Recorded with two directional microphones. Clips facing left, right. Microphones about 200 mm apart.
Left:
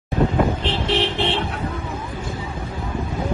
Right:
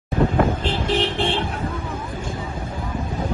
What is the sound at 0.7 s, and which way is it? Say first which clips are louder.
Vehicle: even; 50° right (ahead or behind).